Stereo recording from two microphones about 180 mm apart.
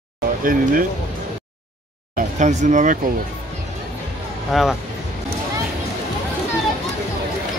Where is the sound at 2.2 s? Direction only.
45° right (ahead or behind).